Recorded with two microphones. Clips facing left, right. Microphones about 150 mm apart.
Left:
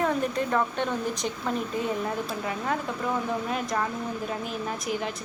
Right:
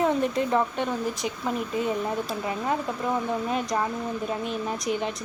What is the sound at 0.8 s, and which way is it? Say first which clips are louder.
Speech: right 1 dB; 5° right (ahead or behind).